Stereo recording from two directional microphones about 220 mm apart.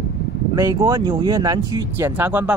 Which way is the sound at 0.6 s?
15° right (ahead or behind).